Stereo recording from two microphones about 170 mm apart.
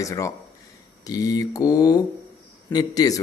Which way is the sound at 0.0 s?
20° left (ahead or behind).